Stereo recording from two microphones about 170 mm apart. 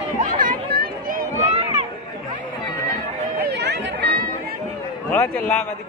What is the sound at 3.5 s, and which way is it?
Run, 90° right.